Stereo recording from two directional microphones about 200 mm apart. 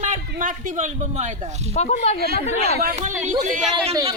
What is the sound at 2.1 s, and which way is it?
Speech, 50° right (ahead or behind).